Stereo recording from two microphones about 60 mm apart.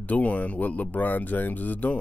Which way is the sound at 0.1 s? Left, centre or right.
Left.